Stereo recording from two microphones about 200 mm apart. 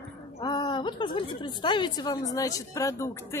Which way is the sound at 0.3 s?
20° left (ahead or behind).